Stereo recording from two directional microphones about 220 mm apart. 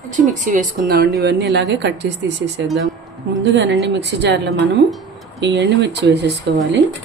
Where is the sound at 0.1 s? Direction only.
35° right (ahead or behind); by 6.8 s 55° right (ahead or behind).